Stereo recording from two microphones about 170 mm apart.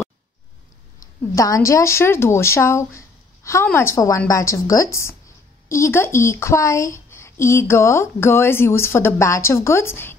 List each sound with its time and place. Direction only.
1.3 s a woman's voice: 20° left (ahead or behind)